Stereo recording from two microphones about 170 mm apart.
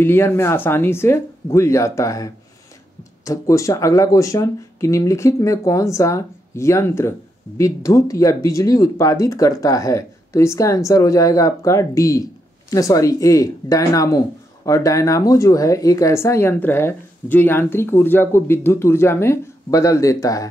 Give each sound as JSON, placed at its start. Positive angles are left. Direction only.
{"t": 0.0, "sound": "speech", "side_deg": 15}